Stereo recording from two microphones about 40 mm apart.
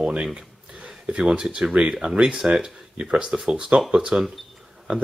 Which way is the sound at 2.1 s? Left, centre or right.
Centre.